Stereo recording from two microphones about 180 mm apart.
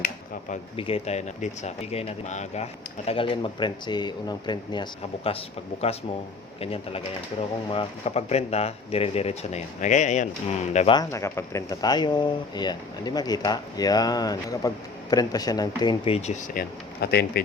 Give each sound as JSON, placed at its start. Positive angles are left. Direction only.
{"t": 0.8, "sound": "speech", "side_deg": 30}
{"t": 6.6, "sound": "speech", "side_deg": 30}
{"t": 10.9, "sound": "speech", "side_deg": 15}
{"t": 17.0, "sound": "speech", "side_deg": 60}